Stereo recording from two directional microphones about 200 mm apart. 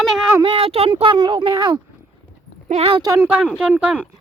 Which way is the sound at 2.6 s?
30° right (ahead or behind).